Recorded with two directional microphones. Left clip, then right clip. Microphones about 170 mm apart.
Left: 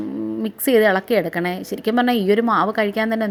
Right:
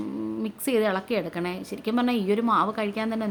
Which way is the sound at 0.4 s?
30° left (ahead or behind).